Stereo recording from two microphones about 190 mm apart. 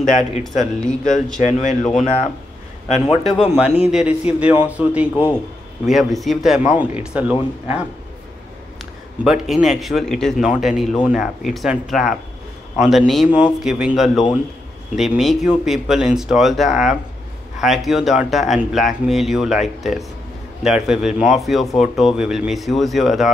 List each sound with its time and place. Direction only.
0.0 s speech: 40° left (ahead or behind)
0.6 s speech: 5° left (ahead or behind)
1.4 s a man's voice: 40° left (ahead or behind)
3.3 s speech: 10° right (ahead or behind)
5.9 s speech: centre (ahead or behind)
9.2 s speech: 5° right (ahead or behind)